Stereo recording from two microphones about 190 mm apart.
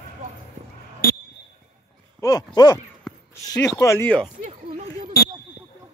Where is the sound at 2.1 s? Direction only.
20° left (ahead or behind).